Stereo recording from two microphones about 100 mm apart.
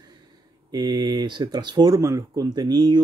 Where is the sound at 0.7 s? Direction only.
45° right (ahead or behind).